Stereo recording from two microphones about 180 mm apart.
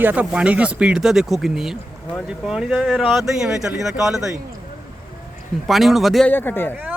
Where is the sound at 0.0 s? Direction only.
10° right (ahead or behind).